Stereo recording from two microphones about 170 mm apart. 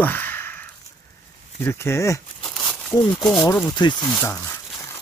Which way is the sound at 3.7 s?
25° left (ahead or behind).